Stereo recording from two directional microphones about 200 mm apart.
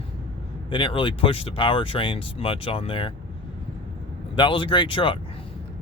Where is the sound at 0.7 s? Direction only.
25° left (ahead or behind).